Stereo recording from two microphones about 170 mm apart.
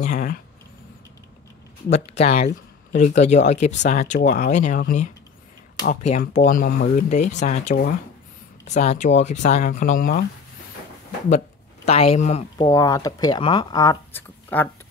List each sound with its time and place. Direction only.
0.0 s speech: 50° left (ahead or behind)
1.9 s speech: 40° left (ahead or behind)
11.2 s speech: 40° left (ahead or behind)
12.5 s speech: 20° left (ahead or behind)